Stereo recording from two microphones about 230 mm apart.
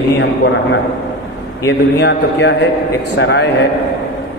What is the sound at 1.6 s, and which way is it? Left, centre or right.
A man's voice, left.